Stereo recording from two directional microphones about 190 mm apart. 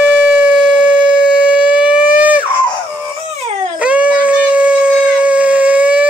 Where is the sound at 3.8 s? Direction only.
5° right (ahead or behind).